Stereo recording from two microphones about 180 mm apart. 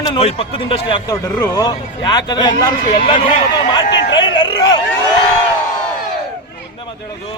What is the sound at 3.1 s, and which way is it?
Speech, 45° left (ahead or behind).